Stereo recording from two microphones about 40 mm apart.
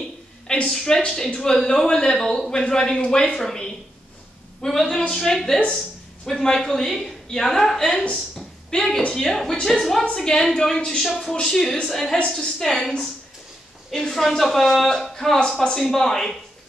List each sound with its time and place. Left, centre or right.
0.7 s a woman's voice: centre
8.1 s a sound: centre
9.1 s speech: centre
10.2 s speech: centre
11.1 s speech: centre
11.4 s speech: centre
15.3 s speech: centre